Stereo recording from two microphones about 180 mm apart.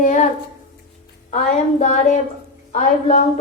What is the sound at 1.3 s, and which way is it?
A woman's voice, 40° left (ahead or behind).